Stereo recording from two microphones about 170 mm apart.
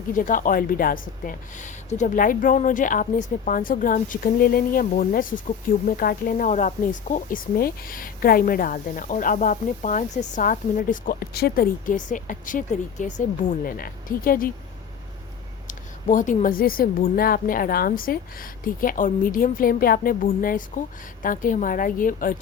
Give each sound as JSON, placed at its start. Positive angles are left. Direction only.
{"t": 0.2, "sound": "a woman's voice", "side_deg": 50}
{"t": 13.7, "sound": "speech", "side_deg": 55}
{"t": 15.6, "sound": "speech", "side_deg": 50}